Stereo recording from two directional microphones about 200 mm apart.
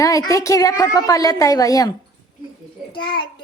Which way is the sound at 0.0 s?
15° left (ahead or behind).